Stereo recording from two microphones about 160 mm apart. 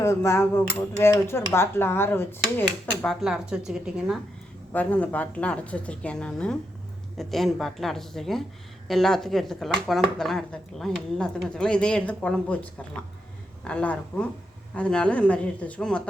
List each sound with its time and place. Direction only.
0.0 s speech: 15° left (ahead or behind)
3.0 s speech: centre (ahead or behind)
4.7 s speech: 10° left (ahead or behind)
13.7 s speech: 10° left (ahead or behind)